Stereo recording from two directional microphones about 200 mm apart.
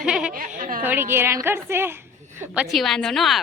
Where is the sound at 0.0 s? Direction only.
5° right (ahead or behind).